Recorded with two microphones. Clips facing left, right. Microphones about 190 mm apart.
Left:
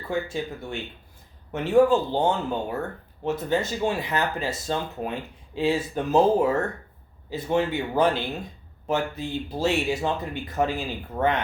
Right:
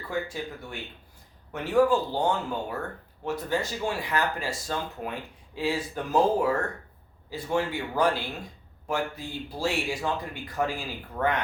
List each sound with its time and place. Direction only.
0.1 s speech: 25° left (ahead or behind)